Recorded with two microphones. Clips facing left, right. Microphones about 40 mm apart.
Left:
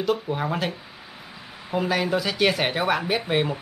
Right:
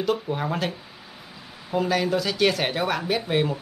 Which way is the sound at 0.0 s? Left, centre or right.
Centre.